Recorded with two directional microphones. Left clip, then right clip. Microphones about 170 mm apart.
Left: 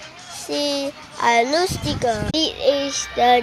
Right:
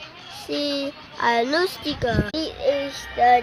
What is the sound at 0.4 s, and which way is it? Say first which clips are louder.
Speech: left 3 dB; 15° right (ahead or behind).